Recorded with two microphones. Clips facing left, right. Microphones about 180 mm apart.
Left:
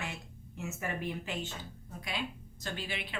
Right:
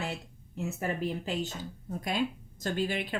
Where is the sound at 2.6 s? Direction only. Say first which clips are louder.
Right 9 dB; 45° right (ahead or behind).